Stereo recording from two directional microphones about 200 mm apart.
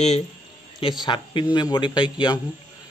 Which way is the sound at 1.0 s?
25° left (ahead or behind).